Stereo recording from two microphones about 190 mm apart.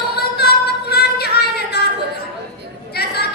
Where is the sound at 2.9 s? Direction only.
55° left (ahead or behind).